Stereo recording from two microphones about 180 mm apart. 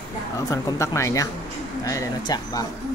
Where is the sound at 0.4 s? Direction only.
20° left (ahead or behind).